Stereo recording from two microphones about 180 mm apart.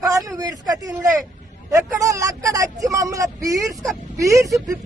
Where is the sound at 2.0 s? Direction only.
20° right (ahead or behind).